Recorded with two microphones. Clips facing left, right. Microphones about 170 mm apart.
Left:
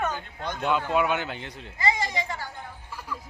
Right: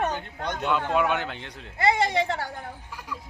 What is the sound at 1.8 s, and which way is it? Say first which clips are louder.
Speech: right 5 dB; 65° right (ahead or behind).